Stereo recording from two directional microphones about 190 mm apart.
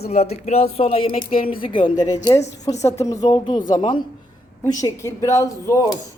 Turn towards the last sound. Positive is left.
turn(degrees=15)  # may be behind; listen again after turning